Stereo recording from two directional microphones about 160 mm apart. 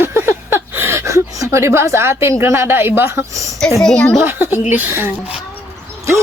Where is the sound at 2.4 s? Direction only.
15° right (ahead or behind).